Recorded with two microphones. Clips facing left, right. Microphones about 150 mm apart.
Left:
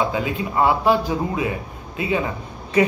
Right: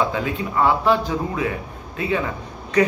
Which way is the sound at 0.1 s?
15° left (ahead or behind).